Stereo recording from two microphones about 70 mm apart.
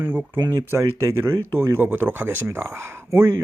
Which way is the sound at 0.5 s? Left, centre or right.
Right.